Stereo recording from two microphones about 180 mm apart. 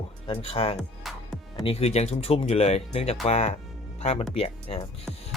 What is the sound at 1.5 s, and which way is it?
Speech, 30° left (ahead or behind).